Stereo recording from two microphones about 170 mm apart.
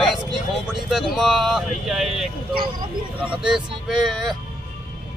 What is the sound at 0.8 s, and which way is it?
Speech, centre (ahead or behind).